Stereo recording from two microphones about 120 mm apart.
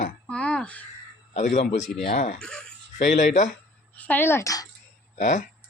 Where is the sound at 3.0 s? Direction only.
90° left.